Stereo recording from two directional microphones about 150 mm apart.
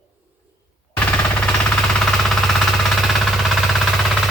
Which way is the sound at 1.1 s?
10° left (ahead or behind).